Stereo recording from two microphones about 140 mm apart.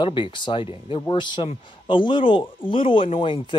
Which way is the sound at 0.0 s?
35° left (ahead or behind).